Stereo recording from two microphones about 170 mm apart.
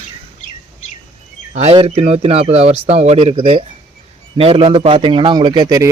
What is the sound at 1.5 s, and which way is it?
A man's voice, 35° right (ahead or behind).